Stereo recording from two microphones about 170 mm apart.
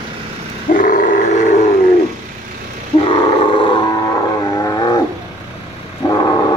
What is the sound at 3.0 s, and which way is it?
Roar, 30° left (ahead or behind).